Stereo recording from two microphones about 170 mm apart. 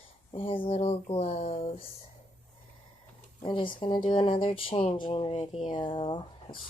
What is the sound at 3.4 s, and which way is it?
A woman's voice, 30° left (ahead or behind).